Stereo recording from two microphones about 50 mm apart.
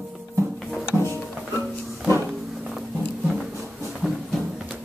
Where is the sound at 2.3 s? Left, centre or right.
Centre.